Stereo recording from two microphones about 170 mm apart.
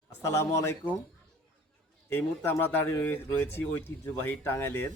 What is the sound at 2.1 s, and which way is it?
Speech, 10° left (ahead or behind).